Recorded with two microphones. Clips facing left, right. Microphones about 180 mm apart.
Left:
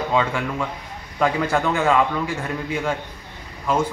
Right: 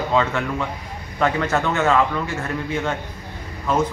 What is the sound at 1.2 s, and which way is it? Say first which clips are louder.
A man's voice: even; 10° left (ahead or behind).